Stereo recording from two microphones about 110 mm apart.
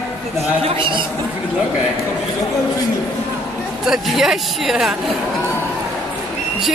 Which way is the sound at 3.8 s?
5° right (ahead or behind).